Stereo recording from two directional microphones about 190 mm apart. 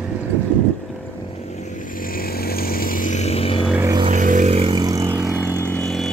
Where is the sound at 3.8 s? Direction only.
25° right (ahead or behind).